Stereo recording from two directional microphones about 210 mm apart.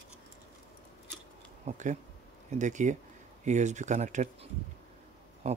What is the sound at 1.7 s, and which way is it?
Speech, 35° right (ahead or behind).